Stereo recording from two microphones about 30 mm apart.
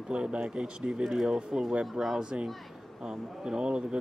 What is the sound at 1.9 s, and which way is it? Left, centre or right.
Speech, centre.